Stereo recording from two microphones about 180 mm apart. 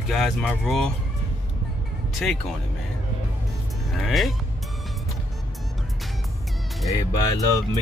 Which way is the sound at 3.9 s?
Centre (ahead or behind).